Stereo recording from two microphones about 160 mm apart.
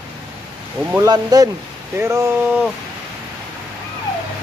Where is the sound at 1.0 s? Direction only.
25° right (ahead or behind).